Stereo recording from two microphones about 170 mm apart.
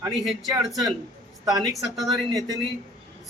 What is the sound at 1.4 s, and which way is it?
A man's voice, 20° right (ahead or behind).